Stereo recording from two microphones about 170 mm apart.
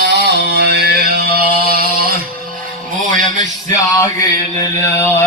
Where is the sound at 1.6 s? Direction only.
65° right (ahead or behind).